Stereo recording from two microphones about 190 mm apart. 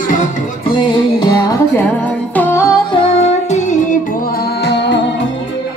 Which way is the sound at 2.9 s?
30° left (ahead or behind).